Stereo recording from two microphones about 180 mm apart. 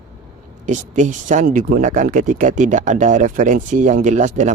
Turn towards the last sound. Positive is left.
turn(degrees=-40)  # may be behind; listen again after turning